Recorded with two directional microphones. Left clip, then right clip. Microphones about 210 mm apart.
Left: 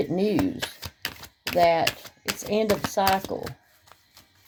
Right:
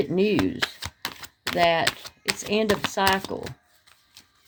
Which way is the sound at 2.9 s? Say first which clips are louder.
Even; 30° right (ahead or behind).